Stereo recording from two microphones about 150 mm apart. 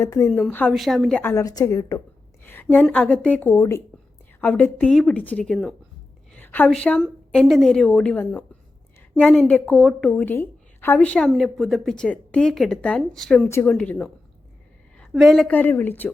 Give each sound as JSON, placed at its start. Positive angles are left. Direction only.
{"t": 0.0, "sound": "a woman's voice", "side_deg": 20}
{"t": 0.7, "sound": "a woman's voice", "side_deg": 0}
{"t": 1.2, "sound": "a woman's voice", "side_deg": 20}
{"t": 2.4, "sound": "a sound", "side_deg": 15}
{"t": 2.9, "sound": "a woman's voice", "side_deg": 10}
{"t": 6.3, "sound": "a sound", "side_deg": 10}
{"t": 7.0, "sound": "a woman's voice", "side_deg": 0}
{"t": 14.9, "sound": "a sound", "side_deg": 0}
{"t": 15.4, "sound": "a woman's voice", "side_deg": 10}